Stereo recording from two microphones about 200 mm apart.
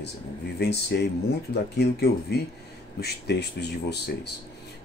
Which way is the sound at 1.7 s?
55° left (ahead or behind).